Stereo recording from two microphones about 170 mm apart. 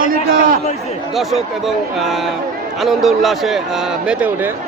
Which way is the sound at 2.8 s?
Centre (ahead or behind).